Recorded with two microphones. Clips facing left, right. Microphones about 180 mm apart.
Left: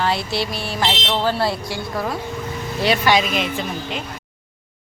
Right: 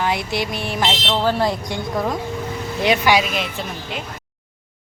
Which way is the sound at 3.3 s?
Centre (ahead or behind).